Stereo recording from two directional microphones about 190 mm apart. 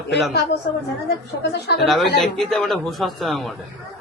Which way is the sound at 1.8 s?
Centre (ahead or behind).